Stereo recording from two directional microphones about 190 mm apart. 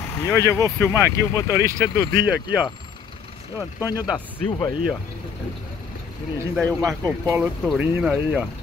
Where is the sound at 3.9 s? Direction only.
20° left (ahead or behind).